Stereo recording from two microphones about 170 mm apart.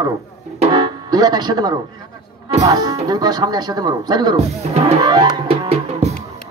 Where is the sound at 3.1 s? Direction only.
25° right (ahead or behind).